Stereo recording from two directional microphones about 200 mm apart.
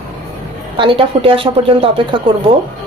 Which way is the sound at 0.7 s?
25° right (ahead or behind).